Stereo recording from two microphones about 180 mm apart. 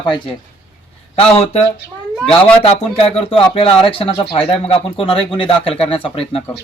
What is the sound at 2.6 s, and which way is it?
Speech, 30° left (ahead or behind).